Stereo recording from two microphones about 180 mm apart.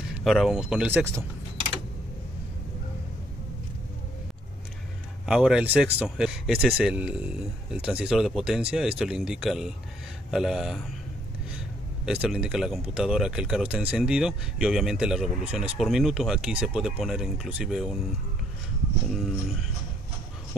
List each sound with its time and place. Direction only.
0.2 s speech: centre (ahead or behind)
5.2 s speech: 5° right (ahead or behind)
12.1 s speech: 5° right (ahead or behind)
19.0 s speech: centre (ahead or behind)